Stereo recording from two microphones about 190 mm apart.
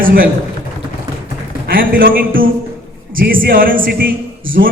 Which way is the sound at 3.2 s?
50° right (ahead or behind).